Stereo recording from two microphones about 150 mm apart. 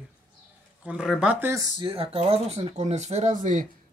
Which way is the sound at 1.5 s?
25° right (ahead or behind).